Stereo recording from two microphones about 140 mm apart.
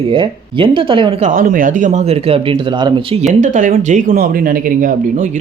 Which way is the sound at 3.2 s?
65° right (ahead or behind).